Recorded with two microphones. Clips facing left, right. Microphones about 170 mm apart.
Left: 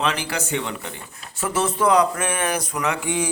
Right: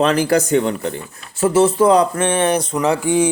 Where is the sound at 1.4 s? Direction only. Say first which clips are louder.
Right 8 dB; 30° right (ahead or behind).